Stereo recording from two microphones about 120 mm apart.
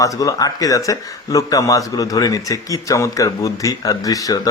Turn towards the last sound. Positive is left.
turn(degrees=30)  # may be behind; listen again after turning